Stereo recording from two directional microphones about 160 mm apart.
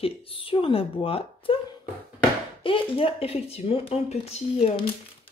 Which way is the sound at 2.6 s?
35° left (ahead or behind).